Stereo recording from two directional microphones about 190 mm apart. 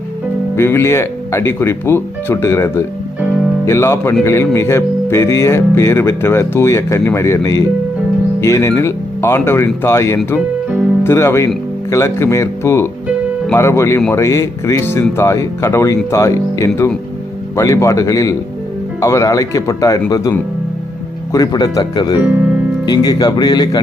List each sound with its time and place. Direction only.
0.5 s speech: 15° left (ahead or behind)
22.2 s speech: 10° right (ahead or behind)
22.9 s speech: 20° left (ahead or behind)